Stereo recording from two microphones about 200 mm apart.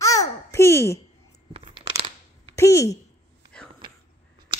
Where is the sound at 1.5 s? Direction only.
25° right (ahead or behind).